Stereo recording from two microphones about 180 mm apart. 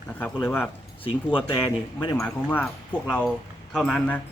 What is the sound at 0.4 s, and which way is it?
Speech, 15° left (ahead or behind).